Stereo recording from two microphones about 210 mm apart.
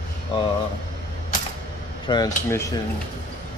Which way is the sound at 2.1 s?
20° left (ahead or behind).